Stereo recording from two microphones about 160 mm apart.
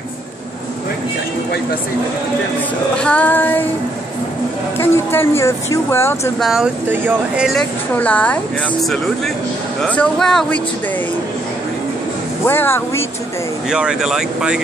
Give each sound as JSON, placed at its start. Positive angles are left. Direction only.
{"t": 3.0, "sound": "speech", "side_deg": 10}
{"t": 4.7, "sound": "speech", "side_deg": 15}
{"t": 6.4, "sound": "speech", "side_deg": -5}
{"t": 7.9, "sound": "speech", "side_deg": 10}
{"t": 12.4, "sound": "speech", "side_deg": 15}
{"t": 13.7, "sound": "speech", "side_deg": -5}